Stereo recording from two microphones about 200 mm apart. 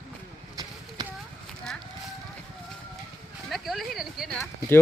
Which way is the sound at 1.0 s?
20° right (ahead or behind).